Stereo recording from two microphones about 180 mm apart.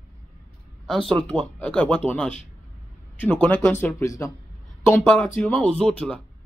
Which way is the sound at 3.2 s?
10° left (ahead or behind).